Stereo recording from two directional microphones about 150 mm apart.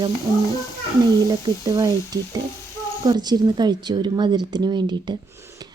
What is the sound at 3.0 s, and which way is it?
Speech, 30° right (ahead or behind).